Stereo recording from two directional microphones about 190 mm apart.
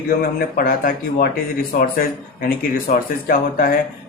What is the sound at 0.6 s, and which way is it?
Speech, 50° left (ahead or behind).